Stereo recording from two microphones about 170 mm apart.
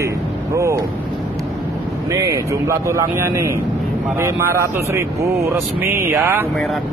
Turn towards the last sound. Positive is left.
turn(degrees=-10)  # may be behind; listen again after turning